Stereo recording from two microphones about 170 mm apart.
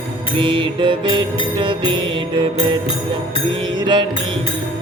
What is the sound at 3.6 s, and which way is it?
Mantra, 25° right (ahead or behind).